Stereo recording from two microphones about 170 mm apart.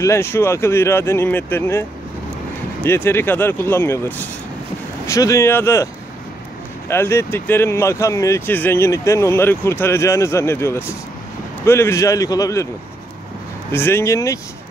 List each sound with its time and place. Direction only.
0.0 s speech: 15° left (ahead or behind)
6.9 s speech: 15° left (ahead or behind)
13.7 s speech: 15° left (ahead or behind)